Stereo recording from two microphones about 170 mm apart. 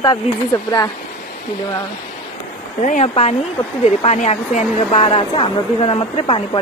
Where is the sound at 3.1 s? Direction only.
35° left (ahead or behind).